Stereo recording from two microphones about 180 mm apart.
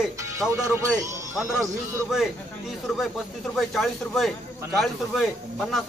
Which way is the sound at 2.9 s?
Centre (ahead or behind).